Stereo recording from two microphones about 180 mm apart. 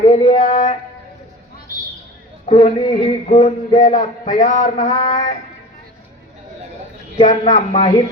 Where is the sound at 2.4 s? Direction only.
35° left (ahead or behind).